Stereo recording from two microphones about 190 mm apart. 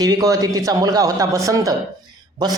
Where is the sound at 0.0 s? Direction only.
20° right (ahead or behind).